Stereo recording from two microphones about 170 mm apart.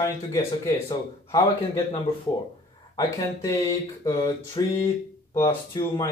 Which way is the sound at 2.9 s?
20° left (ahead or behind).